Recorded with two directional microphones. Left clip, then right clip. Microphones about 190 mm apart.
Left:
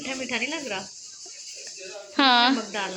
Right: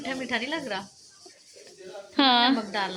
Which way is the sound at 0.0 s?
15° right (ahead or behind).